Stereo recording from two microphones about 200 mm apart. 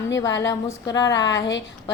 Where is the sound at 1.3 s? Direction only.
65° left (ahead or behind).